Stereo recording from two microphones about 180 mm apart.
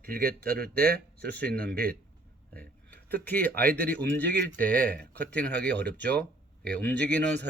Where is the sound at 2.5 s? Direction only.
10° left (ahead or behind).